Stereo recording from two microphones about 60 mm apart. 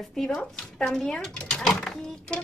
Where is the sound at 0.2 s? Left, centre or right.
Centre.